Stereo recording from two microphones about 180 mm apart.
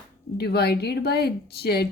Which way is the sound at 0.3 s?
65° left (ahead or behind).